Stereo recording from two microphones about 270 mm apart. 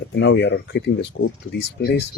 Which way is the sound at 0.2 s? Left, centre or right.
Left.